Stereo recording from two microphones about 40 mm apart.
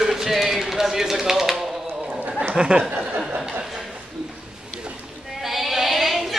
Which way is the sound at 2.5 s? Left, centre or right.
Right.